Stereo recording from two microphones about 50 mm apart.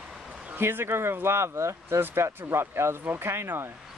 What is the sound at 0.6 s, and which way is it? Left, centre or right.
Speech, right.